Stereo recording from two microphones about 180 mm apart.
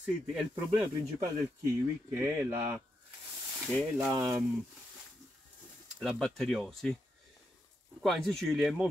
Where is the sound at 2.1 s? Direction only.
10° right (ahead or behind).